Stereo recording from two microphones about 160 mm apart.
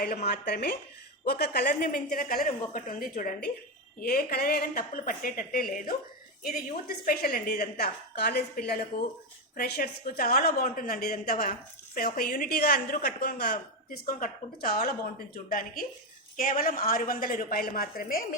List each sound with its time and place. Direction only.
0.0 s a woman's voice: 75° left (ahead or behind)
2.7 s speech: 55° left (ahead or behind)
4.0 s a woman's voice: 70° left (ahead or behind)